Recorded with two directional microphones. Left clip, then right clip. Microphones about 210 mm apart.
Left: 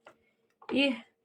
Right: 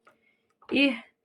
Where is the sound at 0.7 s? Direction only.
45° right (ahead or behind).